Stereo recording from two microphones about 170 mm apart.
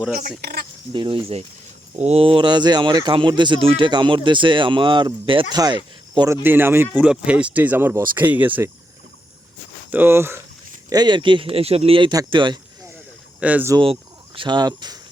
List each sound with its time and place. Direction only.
0.2 s speech: 60° right (ahead or behind)
0.9 s speech: 30° right (ahead or behind); by 8.7 s 10° right (ahead or behind)
9.9 s speech: 15° right (ahead or behind)
13.4 s speech: 10° right (ahead or behind)
13.7 s speech: 30° right (ahead or behind)